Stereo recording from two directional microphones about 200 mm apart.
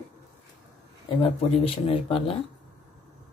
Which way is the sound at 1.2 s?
30° left (ahead or behind).